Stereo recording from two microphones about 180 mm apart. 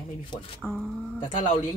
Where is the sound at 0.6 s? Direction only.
Centre (ahead or behind).